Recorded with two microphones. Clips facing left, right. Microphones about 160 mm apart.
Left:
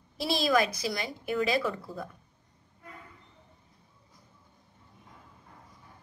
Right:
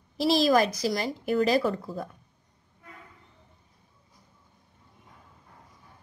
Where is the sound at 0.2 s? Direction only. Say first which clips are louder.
Right 5 dB; 40° right (ahead or behind).